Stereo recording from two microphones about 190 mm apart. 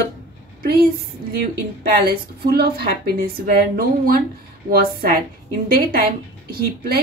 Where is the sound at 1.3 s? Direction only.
55° right (ahead or behind).